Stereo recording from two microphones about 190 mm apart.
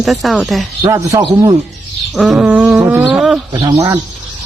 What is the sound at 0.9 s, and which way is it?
Speech, 15° right (ahead or behind).